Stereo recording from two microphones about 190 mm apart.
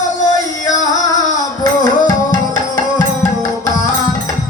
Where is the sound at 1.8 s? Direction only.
20° left (ahead or behind).